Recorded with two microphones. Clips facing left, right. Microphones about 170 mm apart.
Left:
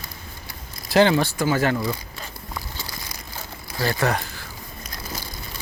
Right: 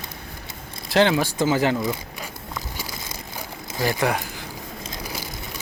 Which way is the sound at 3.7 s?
15° right (ahead or behind).